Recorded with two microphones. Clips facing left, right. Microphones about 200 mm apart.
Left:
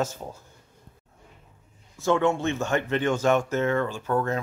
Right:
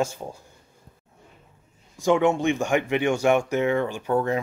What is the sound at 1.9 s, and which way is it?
Speech, 15° right (ahead or behind).